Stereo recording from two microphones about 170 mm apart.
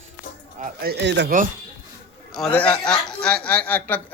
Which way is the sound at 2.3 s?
5° left (ahead or behind).